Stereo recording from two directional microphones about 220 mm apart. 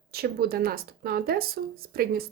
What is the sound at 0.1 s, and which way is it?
Speech, 45° right (ahead or behind).